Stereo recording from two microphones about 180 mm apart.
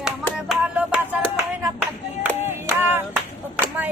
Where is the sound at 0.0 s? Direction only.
5° right (ahead or behind).